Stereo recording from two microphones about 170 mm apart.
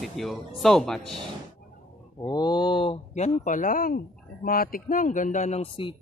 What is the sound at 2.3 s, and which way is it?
A man's voice, 25° left (ahead or behind).